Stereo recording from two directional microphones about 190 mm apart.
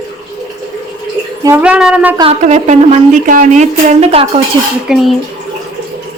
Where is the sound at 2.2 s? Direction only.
35° right (ahead or behind).